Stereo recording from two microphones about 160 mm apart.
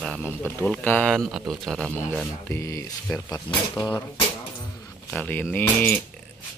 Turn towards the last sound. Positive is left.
turn(degrees=10)  # may be behind; listen again after turning